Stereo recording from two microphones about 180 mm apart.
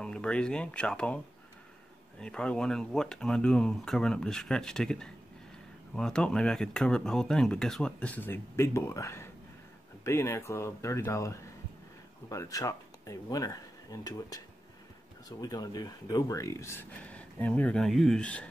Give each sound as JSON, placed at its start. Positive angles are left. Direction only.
{"t": 0.0, "sound": "speech", "side_deg": 5}